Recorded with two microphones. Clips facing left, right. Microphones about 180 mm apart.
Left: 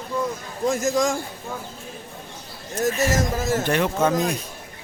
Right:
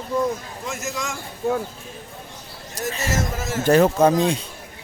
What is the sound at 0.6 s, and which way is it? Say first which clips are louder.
Speech: left 11 dB; 35° left (ahead or behind).